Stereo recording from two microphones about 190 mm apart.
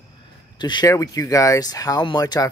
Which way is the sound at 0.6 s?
20° left (ahead or behind).